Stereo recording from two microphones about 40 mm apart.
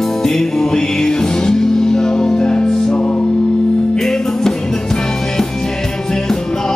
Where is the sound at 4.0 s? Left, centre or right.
Centre.